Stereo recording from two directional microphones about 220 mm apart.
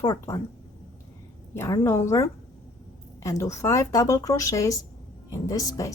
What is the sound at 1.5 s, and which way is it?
Speech, 10° left (ahead or behind).